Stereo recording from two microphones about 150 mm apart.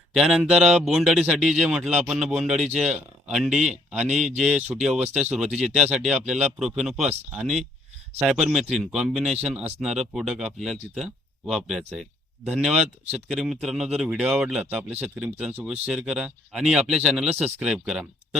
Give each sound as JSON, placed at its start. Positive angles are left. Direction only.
{"t": 0.1, "sound": "speech", "side_deg": -5}